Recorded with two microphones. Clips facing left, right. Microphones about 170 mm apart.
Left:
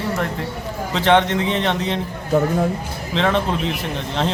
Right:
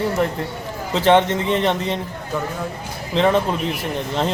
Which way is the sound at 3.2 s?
10° right (ahead or behind).